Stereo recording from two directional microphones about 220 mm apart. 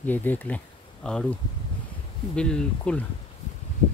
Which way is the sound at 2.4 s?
5° left (ahead or behind).